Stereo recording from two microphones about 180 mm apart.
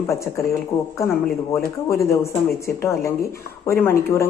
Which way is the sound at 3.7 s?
15° left (ahead or behind).